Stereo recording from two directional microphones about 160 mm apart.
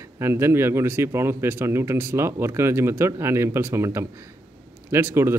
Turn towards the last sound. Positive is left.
turn(degrees=-15)  # may be behind; listen again after turning